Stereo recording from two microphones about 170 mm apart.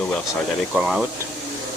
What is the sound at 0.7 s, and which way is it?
Speech, 5° right (ahead or behind).